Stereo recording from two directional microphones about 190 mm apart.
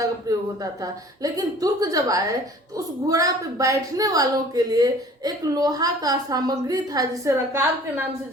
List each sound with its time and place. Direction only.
0.0 s a woman's voice: 20° right (ahead or behind)